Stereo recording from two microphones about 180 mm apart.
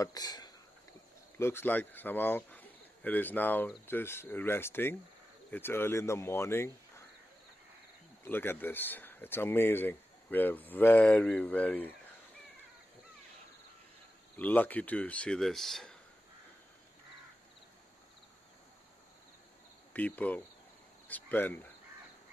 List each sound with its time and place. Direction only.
0.0 s speech: 20° left (ahead or behind)
8.2 s speech: 10° left (ahead or behind)
14.3 s speech: 10° left (ahead or behind)
19.9 s speech: 10° left (ahead or behind)